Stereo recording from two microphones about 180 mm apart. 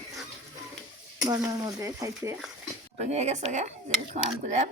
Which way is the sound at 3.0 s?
40° right (ahead or behind).